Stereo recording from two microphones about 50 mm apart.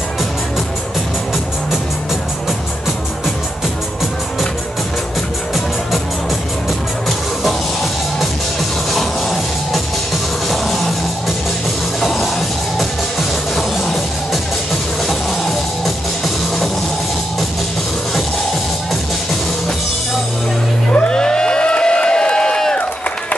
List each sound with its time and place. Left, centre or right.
8.9 s music: centre
15.0 s music: centre
20.9 s a sound: centre